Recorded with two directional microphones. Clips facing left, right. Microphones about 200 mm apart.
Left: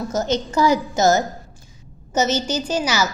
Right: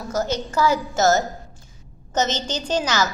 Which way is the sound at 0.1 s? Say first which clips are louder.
Even; 20° left (ahead or behind).